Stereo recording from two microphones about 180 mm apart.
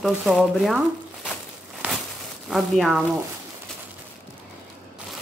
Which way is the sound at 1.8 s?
10° right (ahead or behind).